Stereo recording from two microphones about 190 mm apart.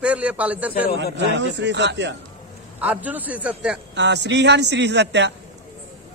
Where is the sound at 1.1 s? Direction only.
65° right (ahead or behind).